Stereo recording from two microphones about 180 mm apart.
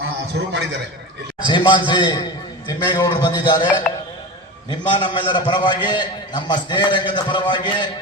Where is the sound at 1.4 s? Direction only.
25° left (ahead or behind).